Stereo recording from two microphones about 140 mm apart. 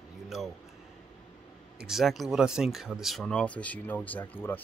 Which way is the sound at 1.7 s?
5° right (ahead or behind).